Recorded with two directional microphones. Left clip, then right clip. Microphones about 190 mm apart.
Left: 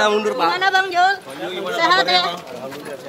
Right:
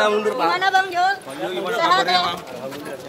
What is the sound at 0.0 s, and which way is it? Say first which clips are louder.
Speech: left 1 dB; 55° left (ahead or behind).